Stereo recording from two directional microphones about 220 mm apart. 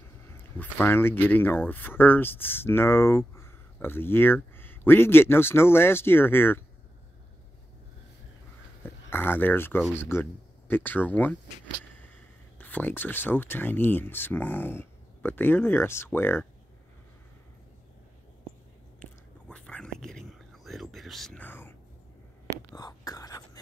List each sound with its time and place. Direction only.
0.4 s speech: 10° left (ahead or behind)
8.8 s speech: 10° left (ahead or behind)
12.5 s speech: 10° left (ahead or behind)
18.9 s whispering: 5° left (ahead or behind)